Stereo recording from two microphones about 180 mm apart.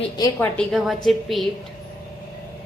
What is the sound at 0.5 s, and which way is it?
Speech, centre (ahead or behind).